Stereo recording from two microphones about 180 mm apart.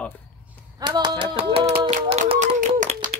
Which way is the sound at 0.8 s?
25° right (ahead or behind).